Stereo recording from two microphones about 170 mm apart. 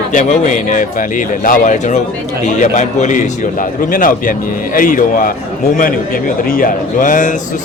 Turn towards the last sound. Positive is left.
turn(degrees=50)  # may be behind; listen again after turning